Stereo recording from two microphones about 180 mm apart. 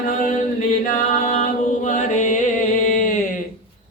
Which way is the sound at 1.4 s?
40° left (ahead or behind).